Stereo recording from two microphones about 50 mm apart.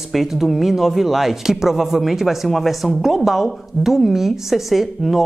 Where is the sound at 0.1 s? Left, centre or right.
Centre.